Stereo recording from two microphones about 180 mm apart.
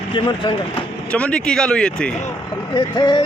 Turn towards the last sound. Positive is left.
turn(degrees=25)  # may be behind; listen again after turning